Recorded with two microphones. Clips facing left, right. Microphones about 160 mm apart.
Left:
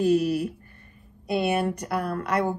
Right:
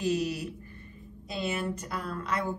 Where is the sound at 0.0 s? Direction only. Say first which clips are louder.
Left 8 dB; 60° left (ahead or behind).